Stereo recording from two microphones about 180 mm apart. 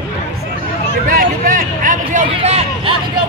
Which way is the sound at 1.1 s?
50° right (ahead or behind).